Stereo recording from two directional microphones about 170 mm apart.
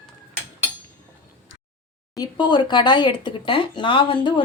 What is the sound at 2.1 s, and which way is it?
A woman's voice, 25° left (ahead or behind).